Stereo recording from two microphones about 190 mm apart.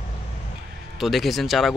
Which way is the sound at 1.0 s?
Centre (ahead or behind).